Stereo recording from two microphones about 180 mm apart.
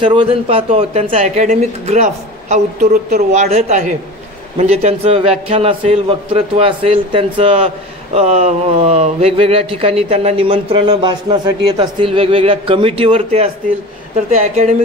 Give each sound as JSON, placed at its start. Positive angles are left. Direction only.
{"t": 0.0, "sound": "a man's voice", "side_deg": -30}